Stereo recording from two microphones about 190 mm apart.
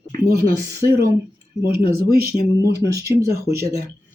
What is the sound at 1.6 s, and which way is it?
Speech, 55° right (ahead or behind).